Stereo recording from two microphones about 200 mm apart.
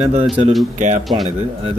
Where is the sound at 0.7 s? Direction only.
35° right (ahead or behind).